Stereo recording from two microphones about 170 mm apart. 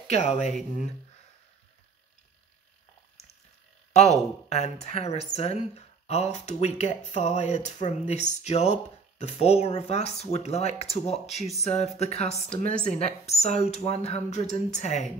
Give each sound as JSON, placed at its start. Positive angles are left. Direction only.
{"t": 0.1, "sound": "a woman's voice", "side_deg": 40}
{"t": 3.9, "sound": "a woman's voice", "side_deg": 40}
{"t": 11.1, "sound": "speech", "side_deg": 0}
{"t": 11.6, "sound": "a woman's voice", "side_deg": 40}